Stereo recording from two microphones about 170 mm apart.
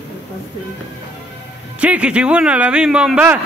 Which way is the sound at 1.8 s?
5° right (ahead or behind).